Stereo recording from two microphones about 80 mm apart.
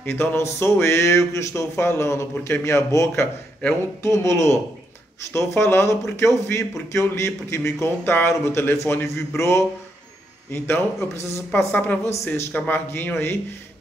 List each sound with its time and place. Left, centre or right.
0.0 s speech: left
11.7 s speech: left